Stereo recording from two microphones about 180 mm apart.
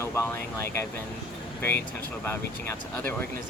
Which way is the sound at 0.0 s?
15° left (ahead or behind).